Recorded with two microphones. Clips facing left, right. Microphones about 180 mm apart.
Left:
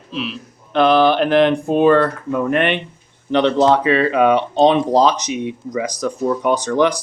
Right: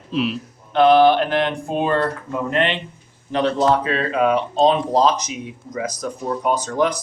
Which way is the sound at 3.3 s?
75° left (ahead or behind).